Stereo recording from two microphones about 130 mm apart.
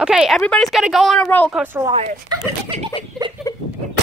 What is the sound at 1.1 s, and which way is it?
Speech, 10° left (ahead or behind).